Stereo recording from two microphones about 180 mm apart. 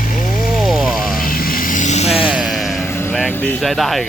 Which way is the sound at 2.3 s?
Centre (ahead or behind).